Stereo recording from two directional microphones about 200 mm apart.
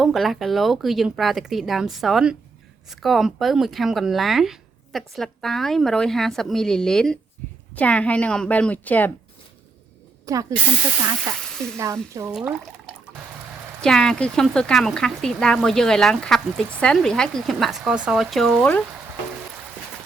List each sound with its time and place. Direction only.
0.0 s a woman's voice: centre (ahead or behind)
10.3 s speech: 15° right (ahead or behind)
12.3 s speech: centre (ahead or behind)
13.8 s speech: 5° left (ahead or behind)